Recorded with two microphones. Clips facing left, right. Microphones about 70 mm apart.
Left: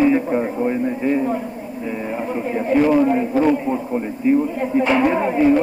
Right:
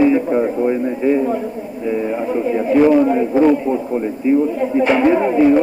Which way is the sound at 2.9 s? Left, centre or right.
Centre.